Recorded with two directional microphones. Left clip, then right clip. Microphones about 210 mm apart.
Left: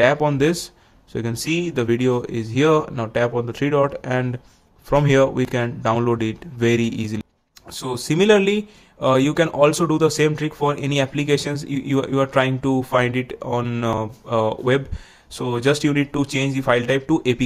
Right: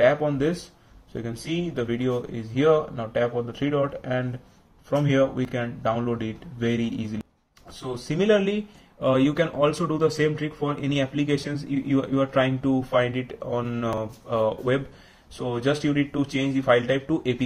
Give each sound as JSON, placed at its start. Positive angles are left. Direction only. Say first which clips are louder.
{"t": 0.0, "sound": "speech", "louder": "left 4 dB", "side_deg": 40}